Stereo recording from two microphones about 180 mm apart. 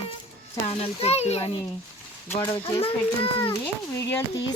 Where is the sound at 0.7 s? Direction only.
35° left (ahead or behind).